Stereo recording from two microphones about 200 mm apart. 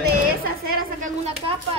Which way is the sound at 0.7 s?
40° right (ahead or behind).